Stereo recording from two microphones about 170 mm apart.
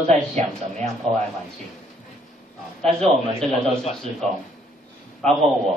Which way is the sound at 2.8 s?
5° left (ahead or behind).